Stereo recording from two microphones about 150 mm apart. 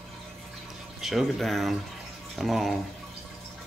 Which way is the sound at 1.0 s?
Centre (ahead or behind).